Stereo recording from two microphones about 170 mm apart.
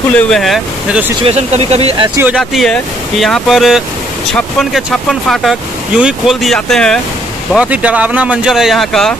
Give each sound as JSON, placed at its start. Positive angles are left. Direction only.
{"t": 0.1, "sound": "speech", "side_deg": 0}
{"t": 1.2, "sound": "speech", "side_deg": -35}
{"t": 2.1, "sound": "speech", "side_deg": -5}
{"t": 7.5, "sound": "speech", "side_deg": -10}